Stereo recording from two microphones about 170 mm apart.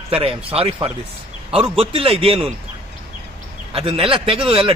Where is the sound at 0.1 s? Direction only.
35° right (ahead or behind).